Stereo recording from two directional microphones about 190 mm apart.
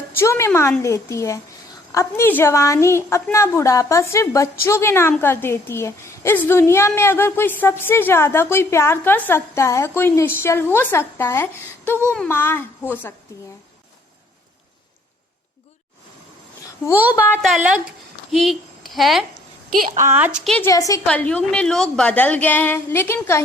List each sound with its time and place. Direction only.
0.2 s a woman's voice: 15° left (ahead or behind)
17.4 s a woman's voice: 5° right (ahead or behind)
19.9 s a woman's voice: 35° right (ahead or behind)
20.1 s a woman's voice: 5° right (ahead or behind)
20.7 s a woman's voice: 15° left (ahead or behind)
21.1 s a woman's voice: 5° left (ahead or behind)